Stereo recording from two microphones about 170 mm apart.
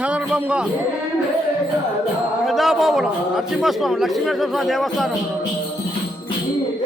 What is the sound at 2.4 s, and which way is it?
A man's voice, centre (ahead or behind).